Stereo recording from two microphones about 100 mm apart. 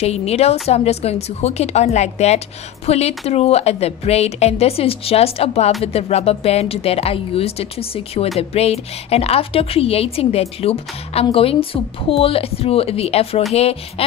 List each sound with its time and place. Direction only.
0.0 s a woman's voice: 90° left
11.3 s a woman's voice: 70° left (ahead or behind); by 14.0 s 90° left